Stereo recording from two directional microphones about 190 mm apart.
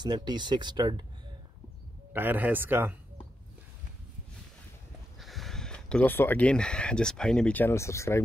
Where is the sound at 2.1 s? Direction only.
10° right (ahead or behind).